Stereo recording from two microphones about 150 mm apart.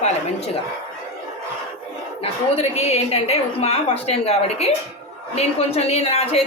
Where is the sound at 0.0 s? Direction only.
45° left (ahead or behind).